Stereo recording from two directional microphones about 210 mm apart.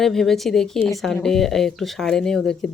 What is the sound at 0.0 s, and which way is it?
Speech, centre (ahead or behind).